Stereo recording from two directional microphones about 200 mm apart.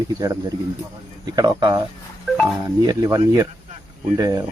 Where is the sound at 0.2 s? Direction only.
20° right (ahead or behind).